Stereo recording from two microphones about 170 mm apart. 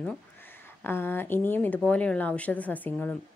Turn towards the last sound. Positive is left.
turn(degrees=10)  # may be behind; listen again after turning